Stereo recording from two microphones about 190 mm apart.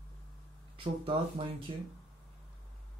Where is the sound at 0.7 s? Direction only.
30° right (ahead or behind).